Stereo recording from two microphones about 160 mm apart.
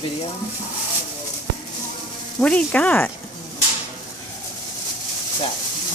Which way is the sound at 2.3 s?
5° left (ahead or behind).